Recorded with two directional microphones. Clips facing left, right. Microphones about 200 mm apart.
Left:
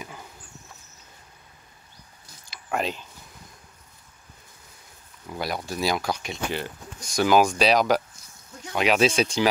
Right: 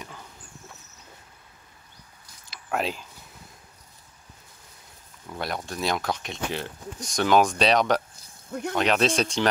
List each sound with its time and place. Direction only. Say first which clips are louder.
2.5 s a sound: even; centre (ahead or behind)
5.2 s speech: left 1 dB; 5° left (ahead or behind)
8.5 s speech: right 11 dB; 60° right (ahead or behind)
8.7 s speech: left 2 dB; 5° left (ahead or behind)